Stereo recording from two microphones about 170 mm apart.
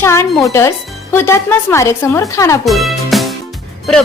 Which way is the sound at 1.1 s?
15° left (ahead or behind).